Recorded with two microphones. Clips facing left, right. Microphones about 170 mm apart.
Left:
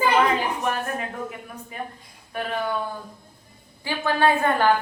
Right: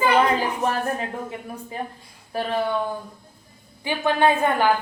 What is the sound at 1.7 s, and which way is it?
Speech, 30° right (ahead or behind).